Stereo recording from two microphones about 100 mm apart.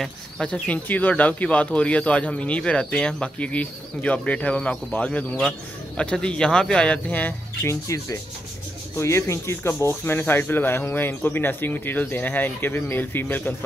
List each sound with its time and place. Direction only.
0.0 s speech: 10° left (ahead or behind)
8.9 s speech: 25° left (ahead or behind)